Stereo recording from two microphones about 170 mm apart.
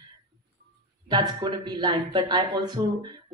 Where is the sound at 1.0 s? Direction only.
25° right (ahead or behind).